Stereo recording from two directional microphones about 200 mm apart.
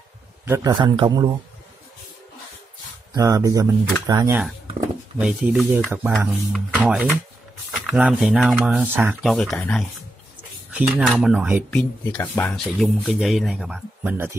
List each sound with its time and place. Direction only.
0.5 s a man's voice: 20° right (ahead or behind)
3.1 s speech: 15° right (ahead or behind); by 9.8 s 5° left (ahead or behind)
10.7 s speech: 5° right (ahead or behind)
11.7 s speech: 5° left (ahead or behind); by 14.3 s 10° right (ahead or behind)